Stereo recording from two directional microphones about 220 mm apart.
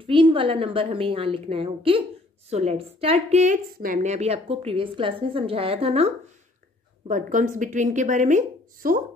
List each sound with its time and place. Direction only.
0.0 s a woman's voice: 25° right (ahead or behind)
7.1 s a woman's voice: 35° right (ahead or behind)